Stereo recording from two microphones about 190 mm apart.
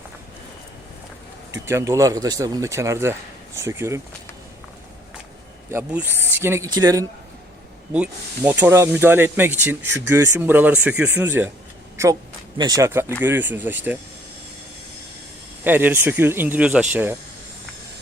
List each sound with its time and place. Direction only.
1.5 s speech: 15° right (ahead or behind)
5.7 s speech: 10° right (ahead or behind)
6.2 s a sound: 10° right (ahead or behind)
6.7 s a man's voice: 20° right (ahead or behind)
7.9 s speech: 5° right (ahead or behind)
12.5 s speech: 20° right (ahead or behind)
15.6 s speech: 10° right (ahead or behind)